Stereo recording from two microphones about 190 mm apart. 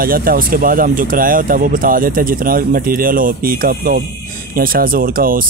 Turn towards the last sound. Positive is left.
turn(degrees=-50)  # may be behind; listen again after turning